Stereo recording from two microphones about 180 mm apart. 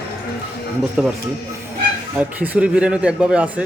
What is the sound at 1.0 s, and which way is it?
Speech, 5° right (ahead or behind).